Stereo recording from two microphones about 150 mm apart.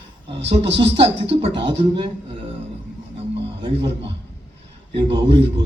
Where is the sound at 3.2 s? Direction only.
40° right (ahead or behind).